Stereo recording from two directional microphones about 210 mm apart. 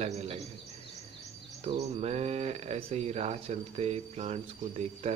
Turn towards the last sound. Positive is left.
turn(degrees=-30)  # may be behind; listen again after turning